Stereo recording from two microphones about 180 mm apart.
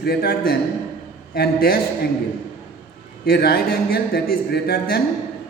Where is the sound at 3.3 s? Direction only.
60° left (ahead or behind).